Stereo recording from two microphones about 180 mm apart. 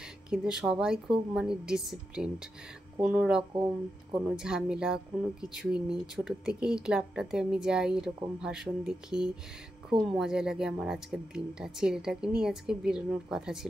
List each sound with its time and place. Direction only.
0.0 s speech: 5° right (ahead or behind)